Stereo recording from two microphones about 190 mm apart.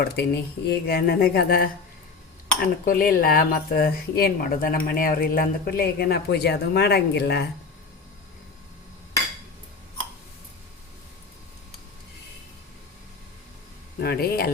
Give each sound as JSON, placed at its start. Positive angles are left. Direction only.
{"t": 0.0, "sound": "speech", "side_deg": 60}
{"t": 2.8, "sound": "speech", "side_deg": 50}
{"t": 14.0, "sound": "speech", "side_deg": 55}